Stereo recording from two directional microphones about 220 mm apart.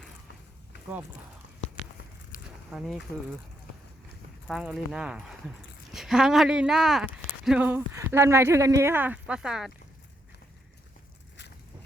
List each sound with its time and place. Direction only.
2.7 s speech: centre (ahead or behind)
4.4 s speech: centre (ahead or behind)